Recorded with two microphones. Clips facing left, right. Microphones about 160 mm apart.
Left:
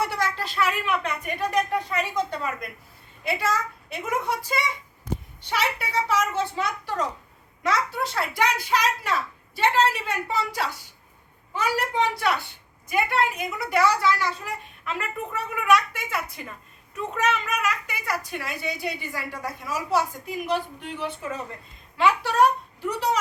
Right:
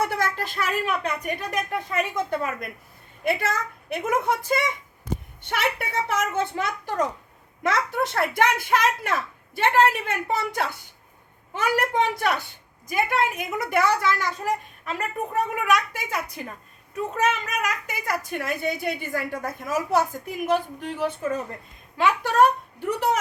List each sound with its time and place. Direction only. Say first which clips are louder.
0.0 s a child's voice: right 1 dB; 50° right (ahead or behind)
2.3 s a child's voice: right 3 dB; 50° right (ahead or behind)
17.2 s a child's voice: left 2 dB; 45° right (ahead or behind)